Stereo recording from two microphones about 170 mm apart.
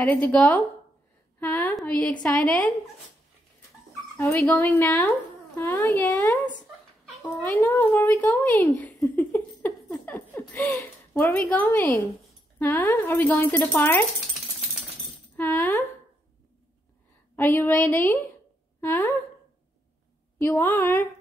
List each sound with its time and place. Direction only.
0.0 s speech: 10° left (ahead or behind)
1.4 s a sound: 10° left (ahead or behind)
1.8 s speech: 5° left (ahead or behind)
4.2 s speech: 10° left (ahead or behind)
15.3 s speech: 15° left (ahead or behind)
17.4 s a woman's voice: 10° left (ahead or behind)
20.3 s speech: 10° left (ahead or behind)